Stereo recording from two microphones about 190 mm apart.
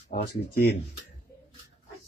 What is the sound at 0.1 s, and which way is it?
Speech, 55° left (ahead or behind).